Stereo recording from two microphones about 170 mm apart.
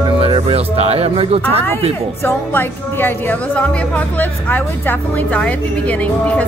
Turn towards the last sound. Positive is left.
turn(degrees=5)  # may be behind; listen again after turning